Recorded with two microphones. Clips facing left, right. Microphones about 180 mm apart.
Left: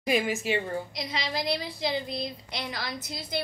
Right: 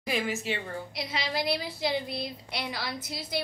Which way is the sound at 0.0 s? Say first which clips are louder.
Left 4 dB; 15° left (ahead or behind).